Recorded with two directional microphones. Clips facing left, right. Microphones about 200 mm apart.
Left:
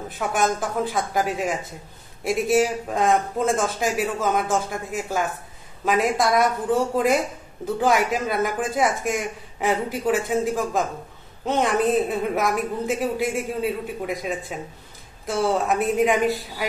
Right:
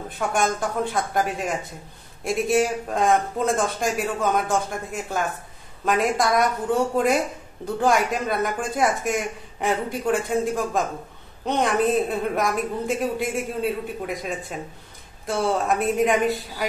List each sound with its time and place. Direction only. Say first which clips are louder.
0.1 s speech: even; centre (ahead or behind)